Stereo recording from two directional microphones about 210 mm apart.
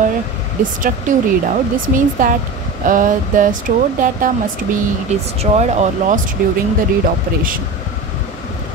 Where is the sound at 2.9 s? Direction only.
40° right (ahead or behind).